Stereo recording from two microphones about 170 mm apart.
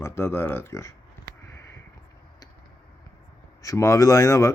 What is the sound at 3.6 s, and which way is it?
Speech, 20° left (ahead or behind).